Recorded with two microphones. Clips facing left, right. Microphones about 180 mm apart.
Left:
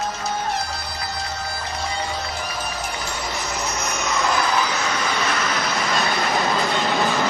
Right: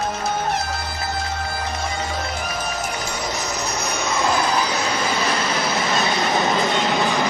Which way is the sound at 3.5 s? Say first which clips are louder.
Right 1 dB; 35° right (ahead or behind).